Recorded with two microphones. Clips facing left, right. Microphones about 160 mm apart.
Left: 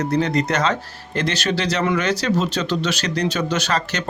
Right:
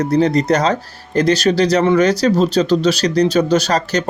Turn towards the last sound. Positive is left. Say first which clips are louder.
# right 7 dB
turn(degrees=-40)  # may be behind; listen again after turning